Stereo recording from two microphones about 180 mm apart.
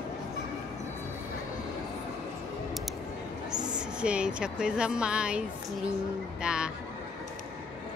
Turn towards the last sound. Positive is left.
turn(degrees=-5)  # may be behind; listen again after turning